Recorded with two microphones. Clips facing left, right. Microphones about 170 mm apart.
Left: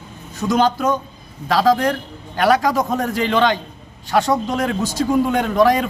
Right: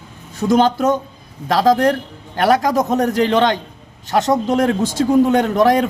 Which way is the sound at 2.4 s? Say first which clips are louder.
Right 1 dB; 20° right (ahead or behind).